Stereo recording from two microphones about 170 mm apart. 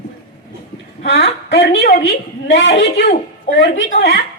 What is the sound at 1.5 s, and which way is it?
A woman's voice, 75° left (ahead or behind).